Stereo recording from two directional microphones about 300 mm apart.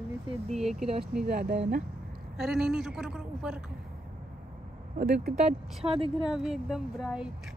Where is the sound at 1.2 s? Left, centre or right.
Right.